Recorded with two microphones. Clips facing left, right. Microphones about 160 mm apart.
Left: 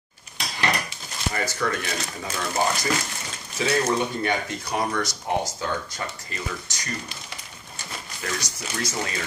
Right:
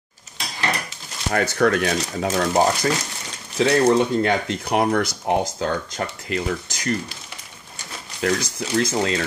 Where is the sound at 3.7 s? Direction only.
75° right (ahead or behind).